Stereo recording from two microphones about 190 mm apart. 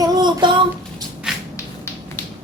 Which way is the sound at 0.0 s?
20° right (ahead or behind).